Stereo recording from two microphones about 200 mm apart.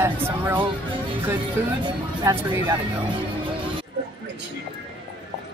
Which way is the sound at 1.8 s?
25° right (ahead or behind).